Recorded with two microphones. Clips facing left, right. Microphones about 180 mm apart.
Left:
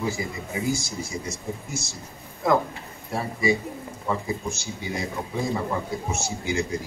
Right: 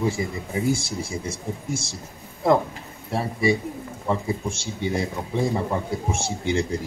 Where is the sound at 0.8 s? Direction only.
30° right (ahead or behind).